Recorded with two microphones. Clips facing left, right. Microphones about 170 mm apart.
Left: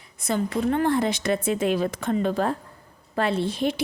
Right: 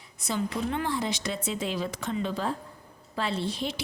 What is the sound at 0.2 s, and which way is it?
A woman's voice, 55° left (ahead or behind).